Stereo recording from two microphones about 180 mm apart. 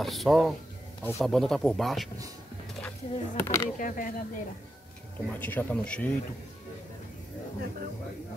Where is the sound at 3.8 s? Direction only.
45° left (ahead or behind).